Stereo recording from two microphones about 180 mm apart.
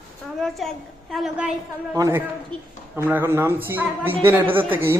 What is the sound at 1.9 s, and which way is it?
Speech, 20° right (ahead or behind).